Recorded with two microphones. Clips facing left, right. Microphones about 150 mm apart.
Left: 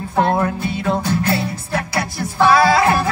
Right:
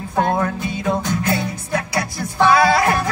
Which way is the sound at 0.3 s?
30° left (ahead or behind).